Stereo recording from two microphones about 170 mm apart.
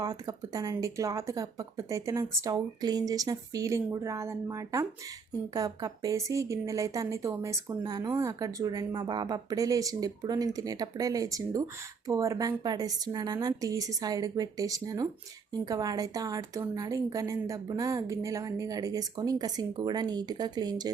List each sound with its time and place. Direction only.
0.0 s speech: 20° right (ahead or behind)